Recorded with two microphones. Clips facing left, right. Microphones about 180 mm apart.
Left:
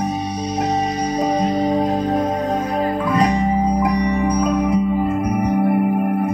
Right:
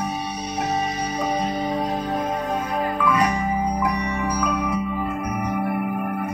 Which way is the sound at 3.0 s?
35° left (ahead or behind).